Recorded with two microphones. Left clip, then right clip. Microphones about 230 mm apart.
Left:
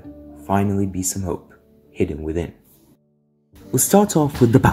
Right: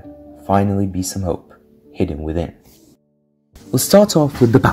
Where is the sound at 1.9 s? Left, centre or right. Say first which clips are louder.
Right 1 dB; centre.